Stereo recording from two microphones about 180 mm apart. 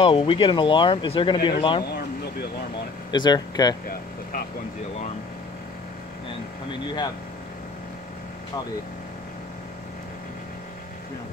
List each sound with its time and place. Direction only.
0.0 s speech: 30° left (ahead or behind)
3.1 s speech: 25° left (ahead or behind)
3.8 s vehicle: 55° left (ahead or behind)